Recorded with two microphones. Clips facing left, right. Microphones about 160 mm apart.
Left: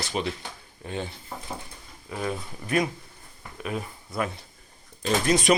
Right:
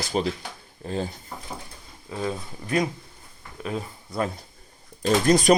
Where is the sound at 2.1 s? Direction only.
25° right (ahead or behind).